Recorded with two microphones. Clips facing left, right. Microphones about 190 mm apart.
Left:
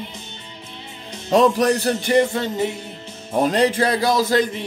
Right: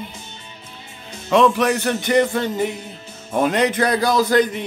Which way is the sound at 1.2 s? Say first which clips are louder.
Even; 35° left (ahead or behind).